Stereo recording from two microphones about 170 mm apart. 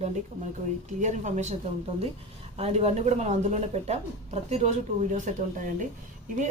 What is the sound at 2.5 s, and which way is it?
Speech, 40° right (ahead or behind).